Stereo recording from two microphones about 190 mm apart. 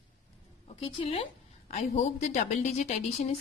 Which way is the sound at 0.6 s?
30° left (ahead or behind).